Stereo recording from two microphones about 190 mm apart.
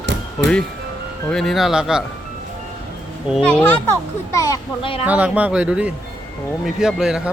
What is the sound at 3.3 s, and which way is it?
Speech, 5° left (ahead or behind).